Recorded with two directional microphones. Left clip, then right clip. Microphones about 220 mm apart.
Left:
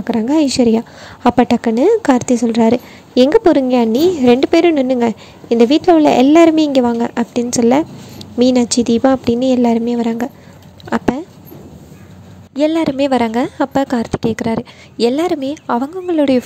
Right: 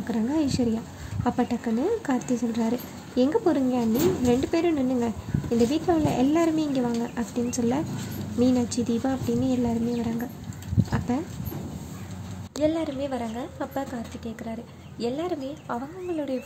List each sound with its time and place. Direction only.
0.0 s a woman's voice: 35° left (ahead or behind)
12.6 s a woman's voice: 40° left (ahead or behind)